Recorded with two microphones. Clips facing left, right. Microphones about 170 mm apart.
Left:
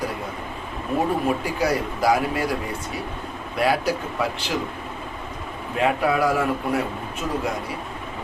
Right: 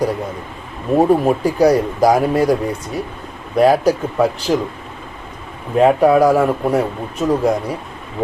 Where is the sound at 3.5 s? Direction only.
40° right (ahead or behind).